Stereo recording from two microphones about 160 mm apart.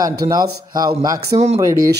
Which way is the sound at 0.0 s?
25° right (ahead or behind).